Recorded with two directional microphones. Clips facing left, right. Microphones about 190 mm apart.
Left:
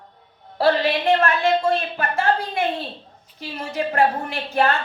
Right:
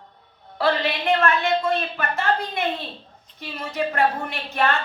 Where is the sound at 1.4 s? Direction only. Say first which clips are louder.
Left 3 dB; 30° left (ahead or behind).